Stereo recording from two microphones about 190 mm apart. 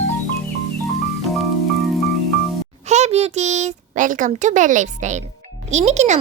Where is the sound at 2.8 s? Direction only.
35° right (ahead or behind).